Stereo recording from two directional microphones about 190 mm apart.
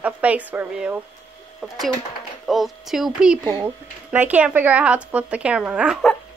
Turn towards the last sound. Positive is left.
turn(degrees=0)  # may be behind; listen again after turning